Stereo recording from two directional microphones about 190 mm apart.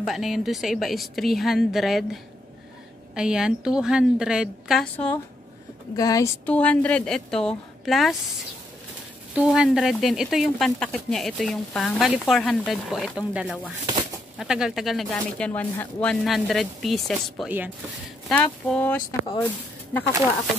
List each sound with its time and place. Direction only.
0.0 s speech: centre (ahead or behind)
3.2 s speech: 5° right (ahead or behind)
5.9 s speech: 20° left (ahead or behind)
6.4 s speech: 5° left (ahead or behind)
9.3 s speech: 5° right (ahead or behind)
18.3 s speech: 5° left (ahead or behind)
19.2 s speech: 20° left (ahead or behind)